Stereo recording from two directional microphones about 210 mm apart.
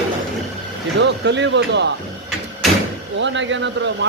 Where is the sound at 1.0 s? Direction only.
55° right (ahead or behind).